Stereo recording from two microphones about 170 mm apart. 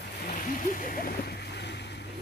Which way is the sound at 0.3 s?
50° left (ahead or behind).